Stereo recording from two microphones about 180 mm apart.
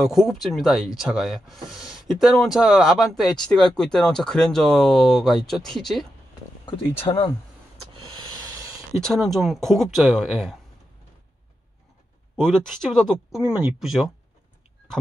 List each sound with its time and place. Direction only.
0.0 s speech: centre (ahead or behind)
7.1 s speech: 25° left (ahead or behind)
7.9 s hiss: 25° right (ahead or behind)
9.0 s speech: centre (ahead or behind)
12.4 s speech: centre (ahead or behind)